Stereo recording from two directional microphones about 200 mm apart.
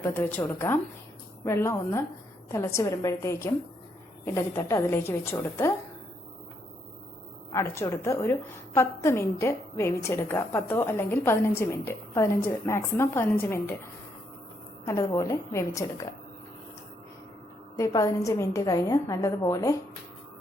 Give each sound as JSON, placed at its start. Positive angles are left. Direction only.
{"t": 0.0, "sound": "a woman's voice", "side_deg": 10}
{"t": 7.5, "sound": "a woman's voice", "side_deg": 15}
{"t": 14.8, "sound": "a woman's voice", "side_deg": 15}
{"t": 17.7, "sound": "a woman's voice", "side_deg": 15}